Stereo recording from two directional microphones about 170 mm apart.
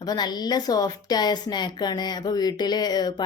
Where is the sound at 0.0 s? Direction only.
25° left (ahead or behind).